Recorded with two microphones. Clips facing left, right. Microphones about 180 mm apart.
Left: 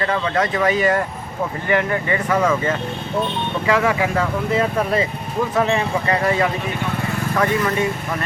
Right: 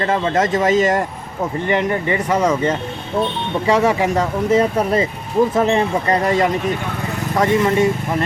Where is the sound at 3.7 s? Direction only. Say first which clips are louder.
Right 3 dB; 35° right (ahead or behind).